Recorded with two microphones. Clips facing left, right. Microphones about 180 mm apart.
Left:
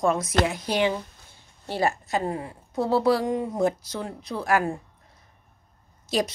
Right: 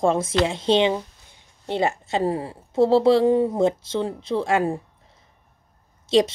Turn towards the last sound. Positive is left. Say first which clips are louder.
# right 8 dB
turn(degrees=-25)  # may be behind; listen again after turning